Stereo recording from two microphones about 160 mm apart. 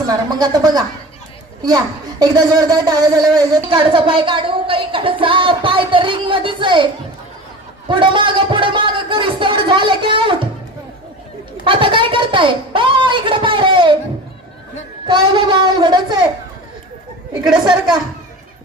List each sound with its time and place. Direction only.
0.3 s a woman's voice: 25° right (ahead or behind)
7.9 s speech: 30° right (ahead or behind)
11.6 s speech: 30° right (ahead or behind)
15.0 s a woman's voice: 30° right (ahead or behind)